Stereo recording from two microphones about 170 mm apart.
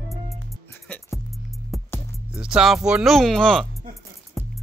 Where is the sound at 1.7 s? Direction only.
Centre (ahead or behind).